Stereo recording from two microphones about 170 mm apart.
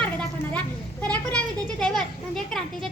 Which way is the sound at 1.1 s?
5° left (ahead or behind).